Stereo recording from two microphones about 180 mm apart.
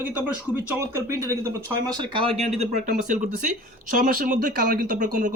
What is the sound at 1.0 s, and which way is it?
Speech, 15° right (ahead or behind).